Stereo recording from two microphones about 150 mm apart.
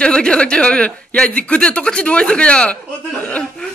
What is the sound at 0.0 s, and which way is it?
Speech, 5° left (ahead or behind).